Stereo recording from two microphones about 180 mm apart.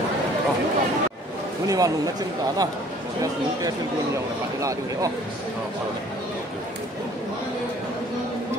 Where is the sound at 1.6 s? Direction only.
20° right (ahead or behind).